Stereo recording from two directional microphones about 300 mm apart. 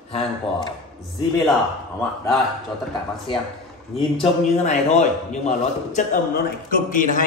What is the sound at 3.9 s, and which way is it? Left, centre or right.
A man's voice, left.